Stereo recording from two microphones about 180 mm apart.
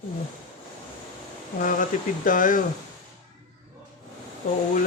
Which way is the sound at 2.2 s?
50° left (ahead or behind).